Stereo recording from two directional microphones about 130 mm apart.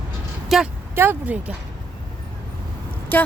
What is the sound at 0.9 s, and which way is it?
Speech, 15° right (ahead or behind).